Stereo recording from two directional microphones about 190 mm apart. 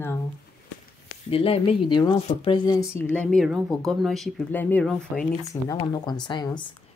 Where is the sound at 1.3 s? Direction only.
30° left (ahead or behind); by 5.3 s centre (ahead or behind).